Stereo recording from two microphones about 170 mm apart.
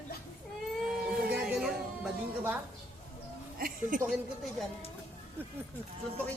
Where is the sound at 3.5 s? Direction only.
60° right (ahead or behind).